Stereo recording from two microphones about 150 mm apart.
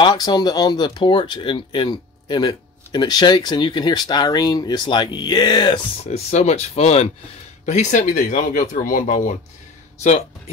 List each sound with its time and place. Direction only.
0.0 s speech: 25° left (ahead or behind)
6.0 s speech: 45° left (ahead or behind)